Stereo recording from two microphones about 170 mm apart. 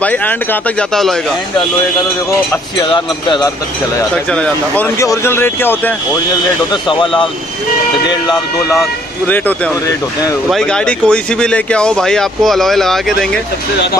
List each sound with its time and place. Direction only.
0.0 s speech: 10° left (ahead or behind)
2.8 s speech: 25° left (ahead or behind)
4.3 s speech: 10° left (ahead or behind)
6.7 s speech: 30° left (ahead or behind)
10.5 s speech: 5° left (ahead or behind)